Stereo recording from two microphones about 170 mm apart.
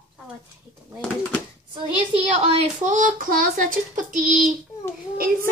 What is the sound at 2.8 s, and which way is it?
A child's voice, 45° right (ahead or behind).